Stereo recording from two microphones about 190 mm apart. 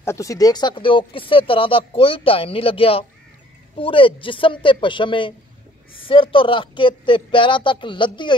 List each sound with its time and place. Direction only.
0.0 s speech: 15° left (ahead or behind)